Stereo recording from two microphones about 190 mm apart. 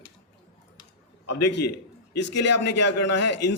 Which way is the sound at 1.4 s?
65° left (ahead or behind).